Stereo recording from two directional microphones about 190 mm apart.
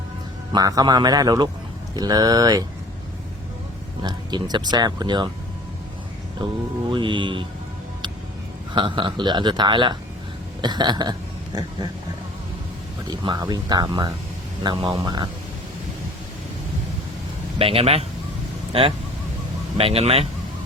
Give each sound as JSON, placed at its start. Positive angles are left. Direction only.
{"t": 0.5, "sound": "speech", "side_deg": -20}
{"t": 4.0, "sound": "speech", "side_deg": -25}
{"t": 6.9, "sound": "speech", "side_deg": -25}
{"t": 8.7, "sound": "speech", "side_deg": -25}
{"t": 13.1, "sound": "speech", "side_deg": -20}
{"t": 17.6, "sound": "speech", "side_deg": -30}